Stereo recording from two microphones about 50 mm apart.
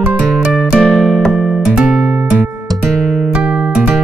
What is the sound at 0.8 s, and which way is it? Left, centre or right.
Music, centre.